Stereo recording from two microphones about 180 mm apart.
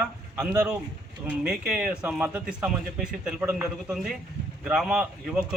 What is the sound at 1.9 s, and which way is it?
A man's voice, 5° right (ahead or behind).